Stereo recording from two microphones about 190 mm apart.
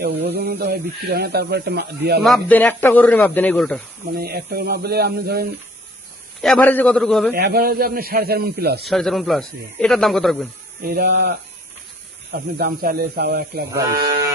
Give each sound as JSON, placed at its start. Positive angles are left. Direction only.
{"t": 0.0, "sound": "speech", "side_deg": -60}
{"t": 2.2, "sound": "speech", "side_deg": 5}
{"t": 4.1, "sound": "speech", "side_deg": -55}
{"t": 6.4, "sound": "speech", "side_deg": 5}
{"t": 7.3, "sound": "a man's voice", "side_deg": -55}
{"t": 8.8, "sound": "speech", "side_deg": 0}
{"t": 10.8, "sound": "speech", "side_deg": -55}
{"t": 12.5, "sound": "speech", "side_deg": -50}